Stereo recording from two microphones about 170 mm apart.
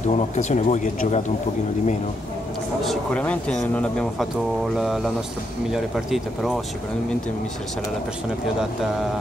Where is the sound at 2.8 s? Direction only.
5° left (ahead or behind).